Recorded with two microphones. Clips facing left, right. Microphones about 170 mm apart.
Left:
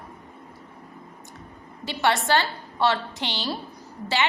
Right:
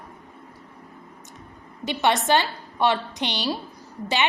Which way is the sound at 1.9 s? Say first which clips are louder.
Right 2 dB; 20° right (ahead or behind).